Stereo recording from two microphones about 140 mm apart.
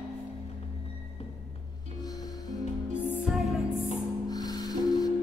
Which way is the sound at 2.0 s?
25° left (ahead or behind).